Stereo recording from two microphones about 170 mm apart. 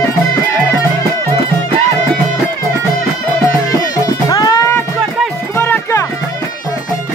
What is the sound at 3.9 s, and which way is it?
Music, 20° left (ahead or behind).